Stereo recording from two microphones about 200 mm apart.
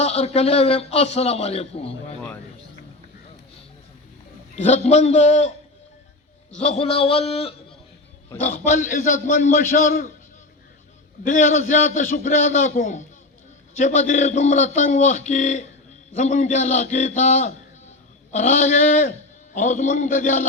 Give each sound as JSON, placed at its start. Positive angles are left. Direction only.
{"t": 0.0, "sound": "a man's voice", "side_deg": 30}
{"t": 4.5, "sound": "a man's voice", "side_deg": 35}
{"t": 6.6, "sound": "a man's voice", "side_deg": 35}
{"t": 8.6, "sound": "a man's voice", "side_deg": 40}
{"t": 11.3, "sound": "a man's voice", "side_deg": 40}